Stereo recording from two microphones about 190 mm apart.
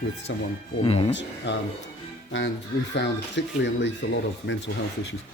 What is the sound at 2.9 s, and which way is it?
Speech, 65° left (ahead or behind).